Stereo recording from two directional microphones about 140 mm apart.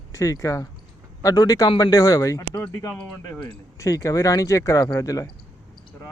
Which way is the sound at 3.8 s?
25° left (ahead or behind).